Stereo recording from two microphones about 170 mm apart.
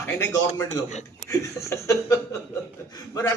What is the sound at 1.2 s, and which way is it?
A man's voice, 15° left (ahead or behind).